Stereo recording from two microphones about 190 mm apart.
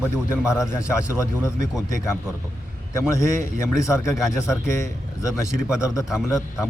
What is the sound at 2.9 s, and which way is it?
A man's voice, 15° left (ahead or behind).